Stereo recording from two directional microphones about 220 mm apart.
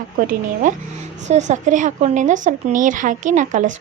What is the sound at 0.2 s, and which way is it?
Speech, 40° right (ahead or behind).